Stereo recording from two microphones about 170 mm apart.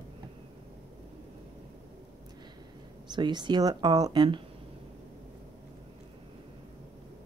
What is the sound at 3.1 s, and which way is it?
Speech, 25° right (ahead or behind).